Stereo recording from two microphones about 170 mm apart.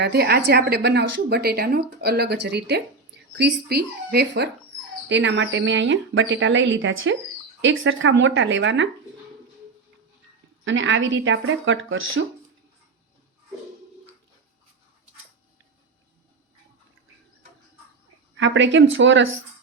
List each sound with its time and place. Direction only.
0.0 s a woman's voice: 70° right (ahead or behind)
5.0 s a woman's voice: 90° right
10.6 s a woman's voice: 90° right
18.3 s a woman's voice: 90° right